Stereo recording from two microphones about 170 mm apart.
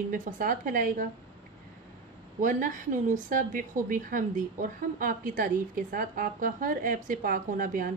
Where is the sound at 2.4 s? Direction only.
50° right (ahead or behind).